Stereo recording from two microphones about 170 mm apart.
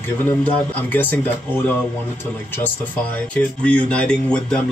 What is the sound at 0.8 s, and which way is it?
Speech, 10° left (ahead or behind).